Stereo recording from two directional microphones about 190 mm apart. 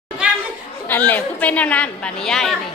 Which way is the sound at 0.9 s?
5° left (ahead or behind).